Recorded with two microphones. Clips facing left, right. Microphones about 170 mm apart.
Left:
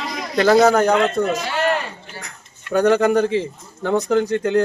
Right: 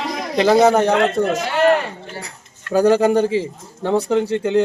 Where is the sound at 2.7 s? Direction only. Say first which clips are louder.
Right 1 dB; 30° right (ahead or behind).